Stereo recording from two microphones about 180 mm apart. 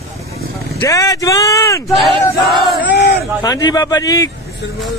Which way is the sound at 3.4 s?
20° left (ahead or behind).